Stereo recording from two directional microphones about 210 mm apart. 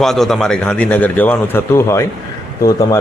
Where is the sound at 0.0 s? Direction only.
Centre (ahead or behind).